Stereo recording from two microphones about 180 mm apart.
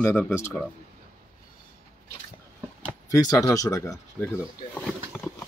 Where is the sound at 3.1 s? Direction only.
20° left (ahead or behind).